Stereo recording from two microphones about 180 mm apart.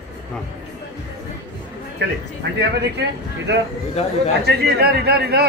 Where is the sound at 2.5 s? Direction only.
70° right (ahead or behind).